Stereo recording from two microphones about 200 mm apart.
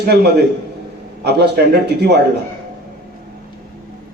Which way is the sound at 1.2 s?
55° right (ahead or behind).